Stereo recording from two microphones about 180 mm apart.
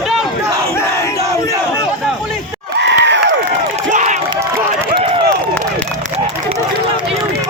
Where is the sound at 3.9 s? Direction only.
40° right (ahead or behind).